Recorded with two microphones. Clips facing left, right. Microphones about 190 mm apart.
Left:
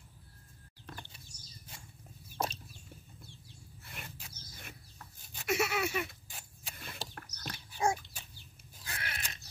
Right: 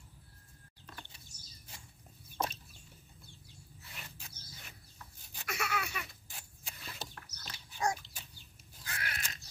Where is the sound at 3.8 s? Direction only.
55° left (ahead or behind).